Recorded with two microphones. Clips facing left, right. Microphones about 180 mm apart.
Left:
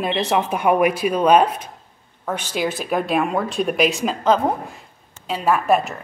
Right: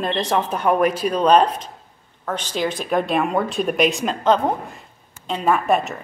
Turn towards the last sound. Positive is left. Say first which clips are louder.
# left 1 dB
turn(degrees=0)  # may be behind; listen again after turning